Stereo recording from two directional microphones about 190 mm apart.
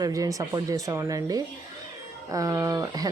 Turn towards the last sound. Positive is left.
turn(degrees=-20)  # may be behind; listen again after turning